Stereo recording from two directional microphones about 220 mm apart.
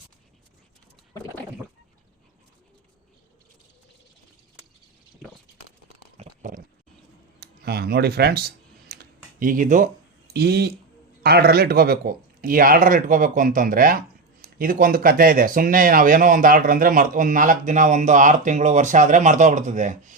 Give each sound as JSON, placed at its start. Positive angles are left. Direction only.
{"t": 6.1, "sound": "a sound", "side_deg": -35}
{"t": 7.3, "sound": "computer keyboard", "side_deg": -45}
{"t": 10.3, "sound": "speech", "side_deg": -45}